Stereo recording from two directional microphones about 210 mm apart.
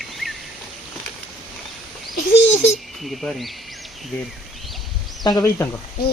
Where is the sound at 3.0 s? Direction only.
Centre (ahead or behind).